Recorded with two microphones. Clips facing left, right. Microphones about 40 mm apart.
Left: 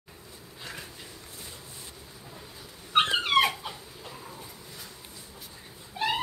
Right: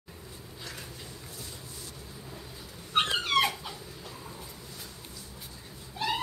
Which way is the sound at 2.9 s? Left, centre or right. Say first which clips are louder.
Left 3 dB; left.